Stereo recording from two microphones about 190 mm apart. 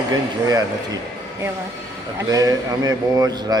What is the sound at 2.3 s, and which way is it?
A man's voice, 20° right (ahead or behind).